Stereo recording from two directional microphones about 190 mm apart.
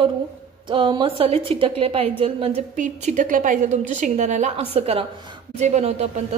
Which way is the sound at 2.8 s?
40° right (ahead or behind).